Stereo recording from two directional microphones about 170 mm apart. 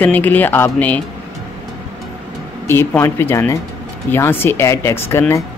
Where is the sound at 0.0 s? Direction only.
10° left (ahead or behind).